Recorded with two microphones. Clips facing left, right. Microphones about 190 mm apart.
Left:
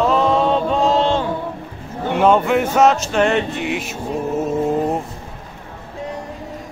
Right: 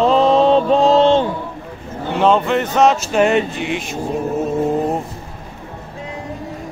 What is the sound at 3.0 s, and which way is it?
Speech, 5° right (ahead or behind).